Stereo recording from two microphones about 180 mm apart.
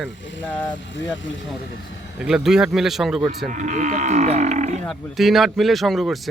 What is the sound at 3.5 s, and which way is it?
Speech, 45° right (ahead or behind).